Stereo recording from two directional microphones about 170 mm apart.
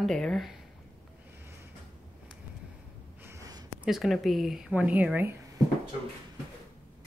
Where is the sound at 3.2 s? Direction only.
20° right (ahead or behind).